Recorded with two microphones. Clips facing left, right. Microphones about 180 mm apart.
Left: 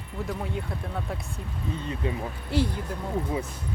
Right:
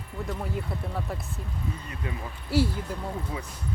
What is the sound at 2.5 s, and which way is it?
Speech, 5° right (ahead or behind).